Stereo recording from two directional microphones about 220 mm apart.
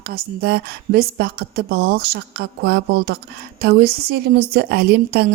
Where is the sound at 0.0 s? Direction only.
45° right (ahead or behind).